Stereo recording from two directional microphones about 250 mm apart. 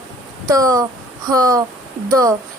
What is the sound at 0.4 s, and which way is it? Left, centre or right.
A woman's voice, centre.